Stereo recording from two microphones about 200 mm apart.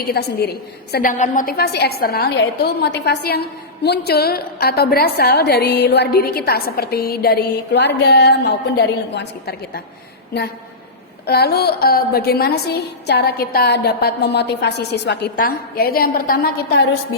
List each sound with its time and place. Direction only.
0.0 s a woman's voice: 50° left (ahead or behind)
11.3 s a woman's voice: 55° left (ahead or behind)